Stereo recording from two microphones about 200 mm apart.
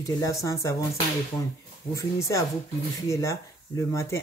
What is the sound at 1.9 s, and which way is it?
Speech, 15° left (ahead or behind).